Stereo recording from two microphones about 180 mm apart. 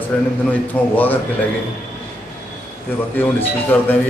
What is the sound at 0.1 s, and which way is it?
Speech, 5° left (ahead or behind).